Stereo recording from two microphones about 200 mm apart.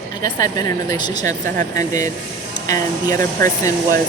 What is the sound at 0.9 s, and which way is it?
Speech, 20° left (ahead or behind).